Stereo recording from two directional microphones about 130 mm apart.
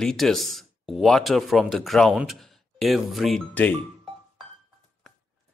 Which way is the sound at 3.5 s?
10° left (ahead or behind).